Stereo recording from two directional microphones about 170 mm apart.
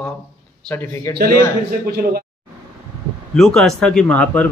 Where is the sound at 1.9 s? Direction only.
65° right (ahead or behind).